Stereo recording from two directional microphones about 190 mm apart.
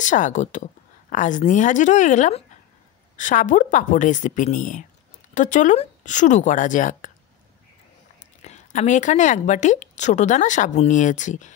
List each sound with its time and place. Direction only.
0.0 s speech: 40° left (ahead or behind)
8.4 s speech: 35° left (ahead or behind)